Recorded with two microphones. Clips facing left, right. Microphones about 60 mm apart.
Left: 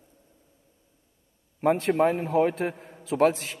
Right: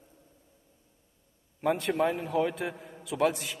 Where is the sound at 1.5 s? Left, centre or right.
Left.